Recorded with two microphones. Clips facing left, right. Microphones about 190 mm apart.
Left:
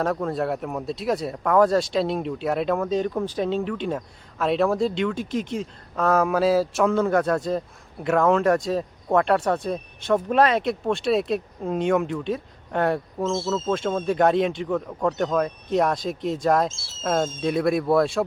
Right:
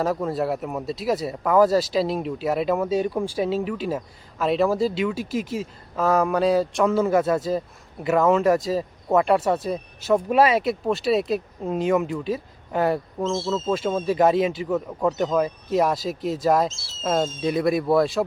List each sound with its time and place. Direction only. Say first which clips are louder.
0.0 s speech: right 1 dB; 5° right (ahead or behind)
16.6 s speech: right 1 dB; 50° left (ahead or behind)
17.0 s speech: right 1 dB; centre (ahead or behind)